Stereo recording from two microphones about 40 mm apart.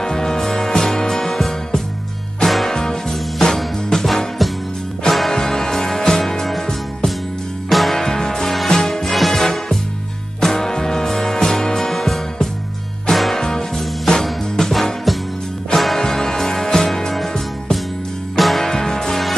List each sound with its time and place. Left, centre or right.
0.0 s music: centre
2.7 s music: centre
5.3 s music: centre
7.7 s music: centre
8.0 s music: centre
13.4 s music: centre
14.2 s music: centre
16.0 s music: centre
18.3 s music: centre
18.7 s music: centre